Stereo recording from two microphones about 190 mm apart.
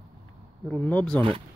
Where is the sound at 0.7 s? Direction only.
10° left (ahead or behind).